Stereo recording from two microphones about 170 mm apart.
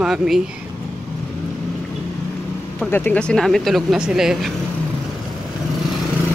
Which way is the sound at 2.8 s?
10° left (ahead or behind).